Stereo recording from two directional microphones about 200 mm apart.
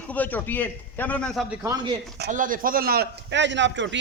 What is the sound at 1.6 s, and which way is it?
Speech, 15° right (ahead or behind).